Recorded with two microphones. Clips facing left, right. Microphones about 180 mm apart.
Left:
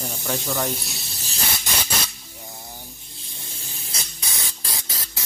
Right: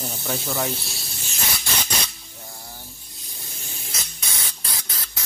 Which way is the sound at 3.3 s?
30° left (ahead or behind).